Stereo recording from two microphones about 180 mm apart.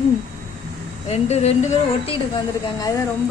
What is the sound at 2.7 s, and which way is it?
Speech, 20° left (ahead or behind).